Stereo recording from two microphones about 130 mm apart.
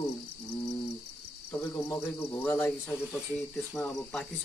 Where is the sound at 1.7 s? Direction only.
20° left (ahead or behind).